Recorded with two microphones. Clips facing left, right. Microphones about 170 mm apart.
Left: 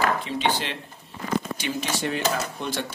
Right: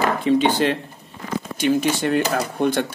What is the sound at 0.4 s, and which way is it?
A man's voice, 50° right (ahead or behind).